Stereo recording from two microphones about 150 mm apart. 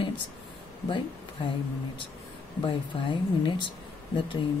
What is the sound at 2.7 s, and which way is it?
Speech, 35° left (ahead or behind).